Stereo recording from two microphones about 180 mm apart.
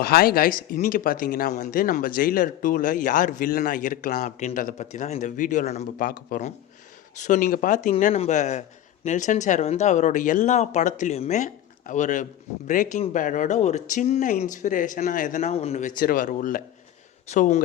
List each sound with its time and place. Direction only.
0.0 s speech: 55° left (ahead or behind); by 17.6 s 40° left (ahead or behind)